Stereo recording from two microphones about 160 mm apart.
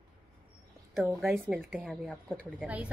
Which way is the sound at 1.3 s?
10° right (ahead or behind).